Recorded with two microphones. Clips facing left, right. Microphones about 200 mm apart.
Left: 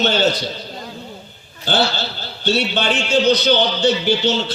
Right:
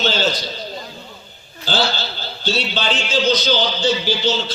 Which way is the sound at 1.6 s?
60° left (ahead or behind).